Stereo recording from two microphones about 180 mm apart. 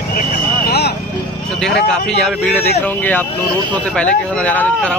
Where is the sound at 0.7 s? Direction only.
65° left (ahead or behind).